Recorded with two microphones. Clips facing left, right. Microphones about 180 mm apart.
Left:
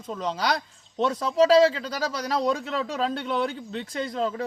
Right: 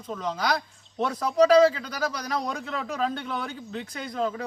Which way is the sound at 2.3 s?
30° left (ahead or behind).